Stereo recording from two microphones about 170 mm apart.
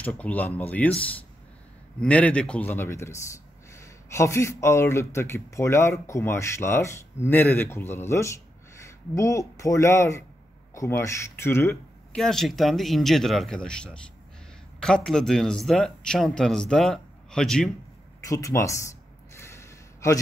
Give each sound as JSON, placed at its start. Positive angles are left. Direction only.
{"t": 0.0, "sound": "speech", "side_deg": 10}
{"t": 12.2, "sound": "speech", "side_deg": 0}
{"t": 18.2, "sound": "speech", "side_deg": 20}
{"t": 19.3, "sound": "a sound", "side_deg": 15}